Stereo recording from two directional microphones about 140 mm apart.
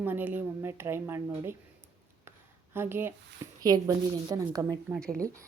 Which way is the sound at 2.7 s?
15° right (ahead or behind).